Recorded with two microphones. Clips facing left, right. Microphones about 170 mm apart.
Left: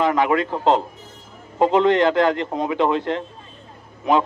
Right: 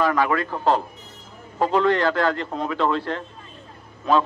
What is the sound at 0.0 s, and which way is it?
A man's voice, 20° left (ahead or behind).